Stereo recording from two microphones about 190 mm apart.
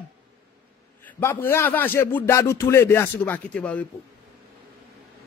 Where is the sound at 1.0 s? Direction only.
10° left (ahead or behind).